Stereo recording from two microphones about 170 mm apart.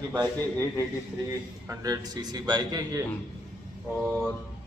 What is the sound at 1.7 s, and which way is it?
A man's voice, 20° right (ahead or behind).